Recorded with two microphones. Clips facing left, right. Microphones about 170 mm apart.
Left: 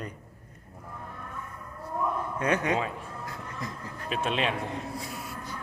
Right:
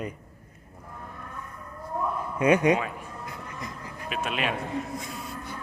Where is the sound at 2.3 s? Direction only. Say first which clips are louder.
Right 8 dB; 10° right (ahead or behind).